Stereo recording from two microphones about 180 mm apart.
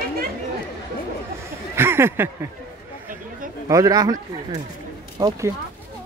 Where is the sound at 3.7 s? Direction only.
20° right (ahead or behind).